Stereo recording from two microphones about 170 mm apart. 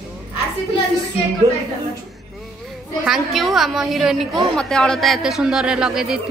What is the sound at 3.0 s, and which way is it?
A woman's voice, centre (ahead or behind).